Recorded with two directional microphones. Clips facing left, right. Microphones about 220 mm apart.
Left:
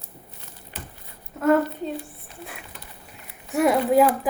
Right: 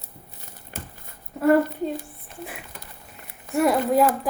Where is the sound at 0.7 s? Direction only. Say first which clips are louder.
Right 2 dB; 45° right (ahead or behind).